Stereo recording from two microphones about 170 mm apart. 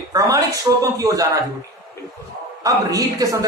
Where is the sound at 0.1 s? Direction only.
20° right (ahead or behind).